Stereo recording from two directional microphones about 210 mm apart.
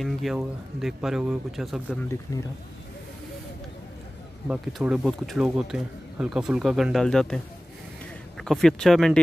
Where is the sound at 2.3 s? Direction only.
15° left (ahead or behind).